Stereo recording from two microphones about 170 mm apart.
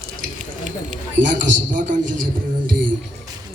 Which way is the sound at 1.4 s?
50° right (ahead or behind).